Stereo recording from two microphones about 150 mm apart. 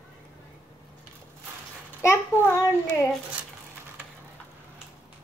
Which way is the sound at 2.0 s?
15° left (ahead or behind).